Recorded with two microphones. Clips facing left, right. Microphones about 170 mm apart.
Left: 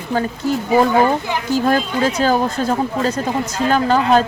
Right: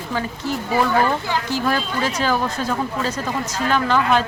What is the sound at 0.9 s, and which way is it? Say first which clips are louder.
Speech: left 4 dB; 20° left (ahead or behind).